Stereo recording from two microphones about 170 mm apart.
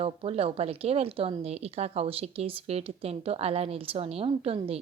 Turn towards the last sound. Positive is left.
turn(degrees=-35)  # may be behind; listen again after turning